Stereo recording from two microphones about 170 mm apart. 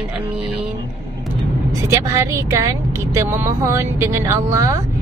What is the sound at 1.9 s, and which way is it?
A woman's voice, 20° right (ahead or behind).